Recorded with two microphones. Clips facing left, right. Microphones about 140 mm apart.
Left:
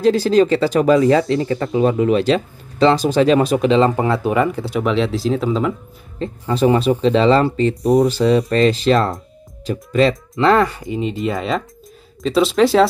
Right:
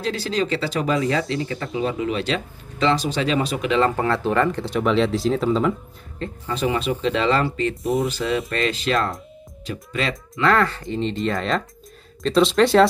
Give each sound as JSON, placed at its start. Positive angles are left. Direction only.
{"t": 0.0, "sound": "speech", "side_deg": 40}
{"t": 3.6, "sound": "speech", "side_deg": 25}
{"t": 6.1, "sound": "speech", "side_deg": 25}
{"t": 6.5, "sound": "speech", "side_deg": 35}
{"t": 10.3, "sound": "speech", "side_deg": 20}